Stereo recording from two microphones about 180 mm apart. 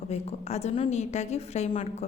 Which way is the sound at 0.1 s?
35° left (ahead or behind).